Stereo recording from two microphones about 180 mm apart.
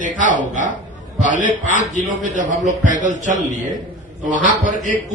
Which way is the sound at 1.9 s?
45° right (ahead or behind).